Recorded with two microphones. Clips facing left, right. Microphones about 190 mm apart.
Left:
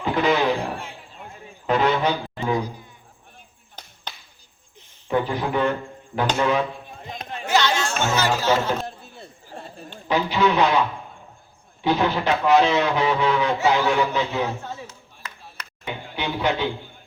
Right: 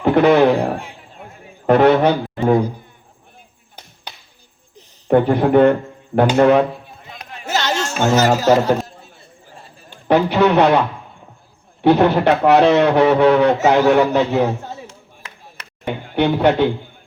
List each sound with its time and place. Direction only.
0.0 s a man's voice: 60° right (ahead or behind)
5.0 s speech: 60° right (ahead or behind)
7.4 s music: 40° right (ahead or behind)
10.1 s speech: 60° right (ahead or behind)
14.4 s a sound: 30° right (ahead or behind)
16.0 s speech: 50° right (ahead or behind)